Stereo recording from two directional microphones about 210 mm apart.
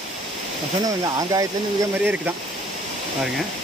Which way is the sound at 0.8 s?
15° right (ahead or behind).